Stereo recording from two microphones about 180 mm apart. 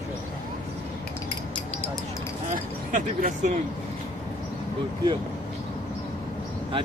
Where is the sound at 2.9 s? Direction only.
45° right (ahead or behind).